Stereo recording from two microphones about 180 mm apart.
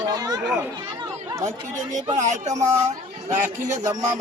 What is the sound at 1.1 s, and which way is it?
Speech, 15° right (ahead or behind).